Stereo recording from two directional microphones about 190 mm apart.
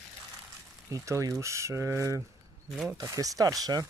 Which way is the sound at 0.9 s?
15° right (ahead or behind).